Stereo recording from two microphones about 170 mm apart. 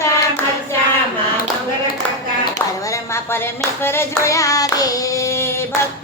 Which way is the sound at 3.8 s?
15° left (ahead or behind).